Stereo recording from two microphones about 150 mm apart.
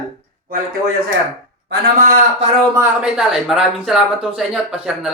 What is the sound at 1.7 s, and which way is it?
Speech, 85° right.